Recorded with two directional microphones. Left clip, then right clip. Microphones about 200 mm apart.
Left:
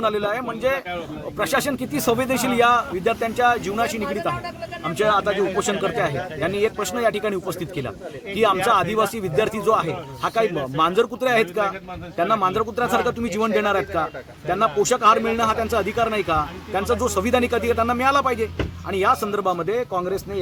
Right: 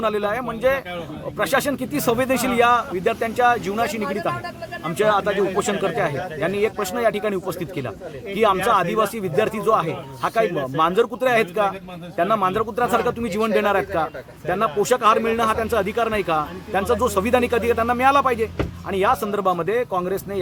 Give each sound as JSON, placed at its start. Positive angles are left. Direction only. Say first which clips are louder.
{"t": 0.0, "sound": "speech", "louder": "even", "side_deg": -10}
{"t": 5.1, "sound": "speech", "louder": "even", "side_deg": -10}